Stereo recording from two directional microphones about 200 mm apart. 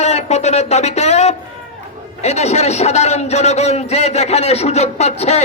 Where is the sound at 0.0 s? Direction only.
35° left (ahead or behind).